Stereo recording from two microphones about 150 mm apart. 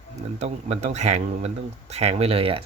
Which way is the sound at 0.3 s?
50° right (ahead or behind).